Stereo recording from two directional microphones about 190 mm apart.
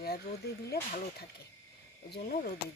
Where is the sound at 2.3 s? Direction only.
55° left (ahead or behind).